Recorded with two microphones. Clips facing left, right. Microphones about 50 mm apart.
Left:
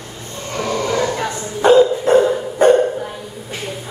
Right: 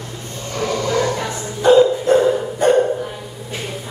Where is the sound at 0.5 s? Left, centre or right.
Centre.